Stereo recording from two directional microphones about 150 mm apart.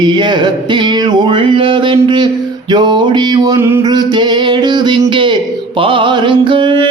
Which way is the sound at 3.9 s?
30° right (ahead or behind).